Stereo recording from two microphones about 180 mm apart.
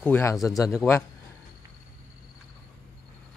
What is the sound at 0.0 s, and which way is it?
Speech, 15° left (ahead or behind).